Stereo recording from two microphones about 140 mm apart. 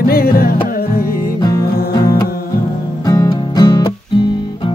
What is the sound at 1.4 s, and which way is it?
Music, 25° left (ahead or behind).